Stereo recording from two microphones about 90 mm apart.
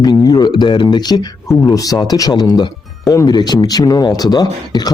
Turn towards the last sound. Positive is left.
turn(degrees=50)  # may be behind; listen again after turning